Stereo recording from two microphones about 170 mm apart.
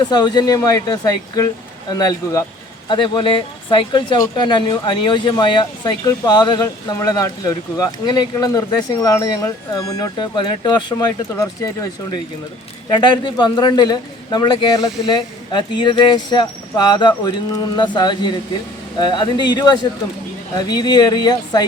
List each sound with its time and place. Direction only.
0.0 s speech: 25° left (ahead or behind)